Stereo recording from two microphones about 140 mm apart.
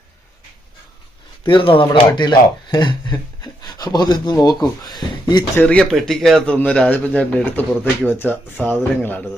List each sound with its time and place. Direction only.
1.5 s speech: 35° left (ahead or behind)
5.5 s a man's voice: 5° left (ahead or behind)